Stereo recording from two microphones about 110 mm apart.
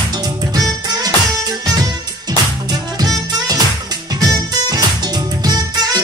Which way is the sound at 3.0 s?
35° right (ahead or behind).